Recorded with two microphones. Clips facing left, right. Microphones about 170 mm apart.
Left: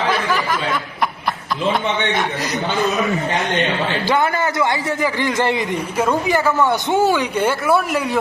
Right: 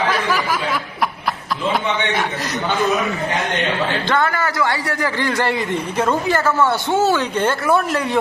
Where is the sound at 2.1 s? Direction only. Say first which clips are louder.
Left 1 dB; 5° right (ahead or behind).